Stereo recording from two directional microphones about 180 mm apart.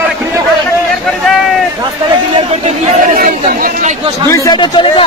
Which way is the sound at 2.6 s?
40° right (ahead or behind).